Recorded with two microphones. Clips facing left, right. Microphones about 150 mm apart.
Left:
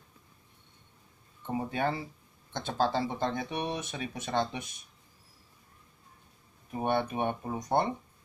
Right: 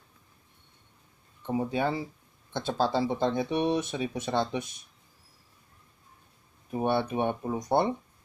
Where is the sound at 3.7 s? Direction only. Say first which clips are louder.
Right 8 dB; 15° left (ahead or behind).